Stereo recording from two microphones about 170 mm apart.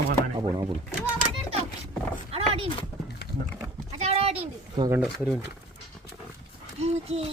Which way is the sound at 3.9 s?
40° right (ahead or behind).